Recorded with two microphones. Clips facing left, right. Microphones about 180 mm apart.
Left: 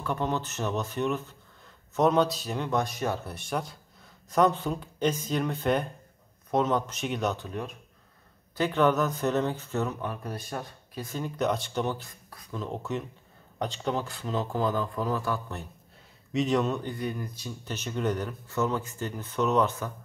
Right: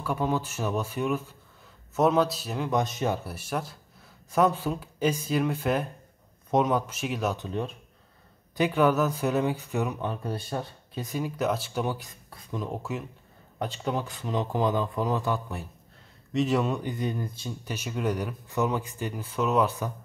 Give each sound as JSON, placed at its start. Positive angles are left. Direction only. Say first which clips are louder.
{"t": 0.0, "sound": "speech", "louder": "right 2 dB", "side_deg": -10}
{"t": 2.7, "sound": "speech", "louder": "right 2 dB", "side_deg": -20}
{"t": 3.3, "sound": "speech", "louder": "even", "side_deg": -5}
{"t": 7.3, "sound": "speech", "louder": "right 4 dB", "side_deg": -25}
{"t": 8.5, "sound": "speech", "louder": "right 1 dB", "side_deg": -10}
{"t": 10.0, "sound": "speech", "louder": "right 3 dB", "side_deg": -30}
{"t": 11.1, "sound": "speech", "louder": "right 1 dB", "side_deg": -10}
{"t": 12.1, "sound": "a sound", "louder": "right 3 dB", "side_deg": -25}
{"t": 12.5, "sound": "speech", "louder": "even", "side_deg": -10}
{"t": 16.3, "sound": "speech", "louder": "right 1 dB", "side_deg": -5}
{"t": 17.6, "sound": "speech", "louder": "even", "side_deg": -10}